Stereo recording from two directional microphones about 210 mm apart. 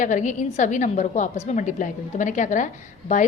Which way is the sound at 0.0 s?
35° left (ahead or behind).